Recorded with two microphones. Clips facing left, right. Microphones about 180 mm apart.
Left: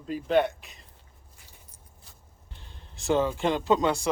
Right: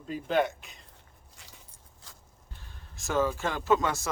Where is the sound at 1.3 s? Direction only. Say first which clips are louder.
Right 3 dB; 80° right.